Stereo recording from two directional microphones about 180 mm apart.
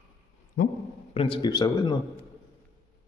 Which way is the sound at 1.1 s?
30° left (ahead or behind).